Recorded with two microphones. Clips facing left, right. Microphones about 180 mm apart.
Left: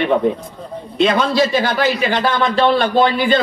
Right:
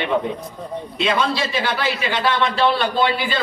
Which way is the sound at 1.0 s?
45° left (ahead or behind).